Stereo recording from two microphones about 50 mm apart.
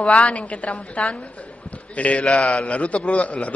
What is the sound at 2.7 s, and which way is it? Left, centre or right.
Speech, left.